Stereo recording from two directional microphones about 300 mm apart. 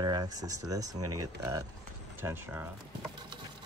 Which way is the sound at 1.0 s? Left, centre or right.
Right.